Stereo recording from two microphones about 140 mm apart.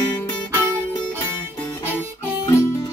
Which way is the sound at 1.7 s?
15° left (ahead or behind).